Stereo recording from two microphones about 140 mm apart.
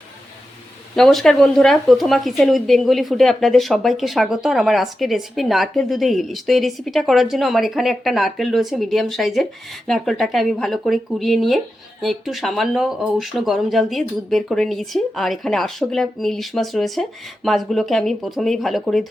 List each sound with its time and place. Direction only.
0.9 s speech: 5° left (ahead or behind)